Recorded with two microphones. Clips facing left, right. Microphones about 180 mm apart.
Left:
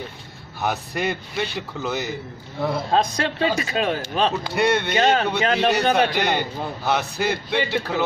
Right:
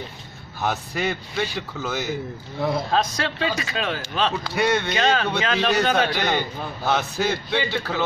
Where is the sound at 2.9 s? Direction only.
25° left (ahead or behind).